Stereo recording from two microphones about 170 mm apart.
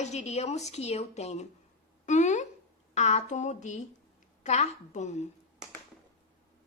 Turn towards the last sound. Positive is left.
turn(degrees=45)  # may be behind; listen again after turning